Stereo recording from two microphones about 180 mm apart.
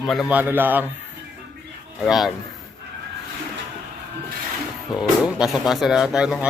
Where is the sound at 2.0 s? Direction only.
Centre (ahead or behind).